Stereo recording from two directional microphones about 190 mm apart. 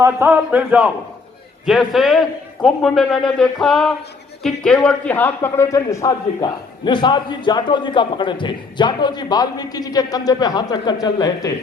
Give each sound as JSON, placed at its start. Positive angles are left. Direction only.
{"t": 0.0, "sound": "a man's voice", "side_deg": -10}